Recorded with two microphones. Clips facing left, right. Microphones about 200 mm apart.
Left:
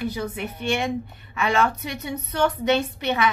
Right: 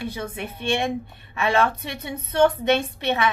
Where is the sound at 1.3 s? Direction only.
30° right (ahead or behind).